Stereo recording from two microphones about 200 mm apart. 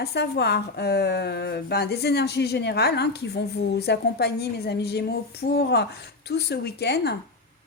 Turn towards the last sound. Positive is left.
turn(degrees=55)  # may be behind; listen again after turning